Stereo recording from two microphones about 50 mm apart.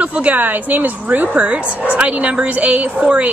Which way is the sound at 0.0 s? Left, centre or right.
Right.